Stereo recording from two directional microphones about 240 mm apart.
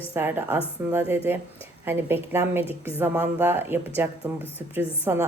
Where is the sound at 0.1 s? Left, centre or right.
Centre.